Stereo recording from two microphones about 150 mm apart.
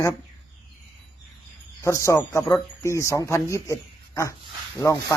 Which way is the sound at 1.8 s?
20° left (ahead or behind).